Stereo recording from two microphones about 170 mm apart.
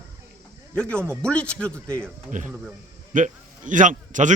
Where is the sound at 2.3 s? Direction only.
50° right (ahead or behind).